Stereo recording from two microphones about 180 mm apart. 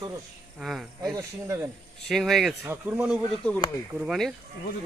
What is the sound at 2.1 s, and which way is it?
Speech, centre (ahead or behind).